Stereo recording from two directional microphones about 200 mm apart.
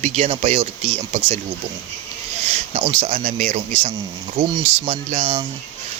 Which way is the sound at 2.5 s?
30° right (ahead or behind).